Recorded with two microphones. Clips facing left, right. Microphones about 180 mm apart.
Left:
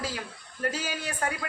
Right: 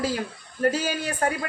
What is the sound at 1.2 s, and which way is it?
Speech, 40° right (ahead or behind).